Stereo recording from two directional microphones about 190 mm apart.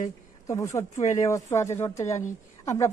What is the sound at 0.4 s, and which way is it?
Speech, 15° left (ahead or behind).